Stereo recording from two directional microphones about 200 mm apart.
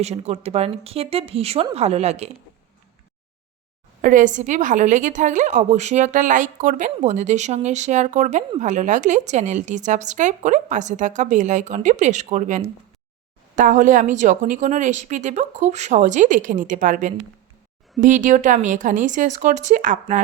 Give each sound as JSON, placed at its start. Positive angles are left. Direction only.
{"t": 0.0, "sound": "a woman's voice", "side_deg": -30}
{"t": 4.0, "sound": "a woman's voice", "side_deg": -40}